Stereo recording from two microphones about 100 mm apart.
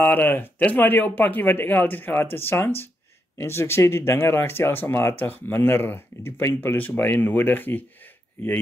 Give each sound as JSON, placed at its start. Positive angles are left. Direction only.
{"t": 0.0, "sound": "speech", "side_deg": 20}